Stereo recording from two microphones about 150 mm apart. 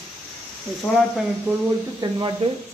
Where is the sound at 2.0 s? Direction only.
30° right (ahead or behind).